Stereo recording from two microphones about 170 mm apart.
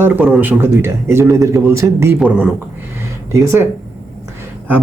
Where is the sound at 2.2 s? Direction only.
5° right (ahead or behind).